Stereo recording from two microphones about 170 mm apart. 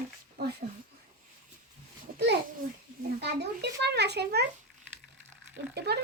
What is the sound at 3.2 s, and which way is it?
A child's voice, 80° right.